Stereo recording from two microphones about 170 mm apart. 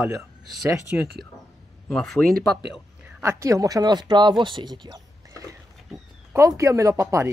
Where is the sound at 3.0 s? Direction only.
15° right (ahead or behind).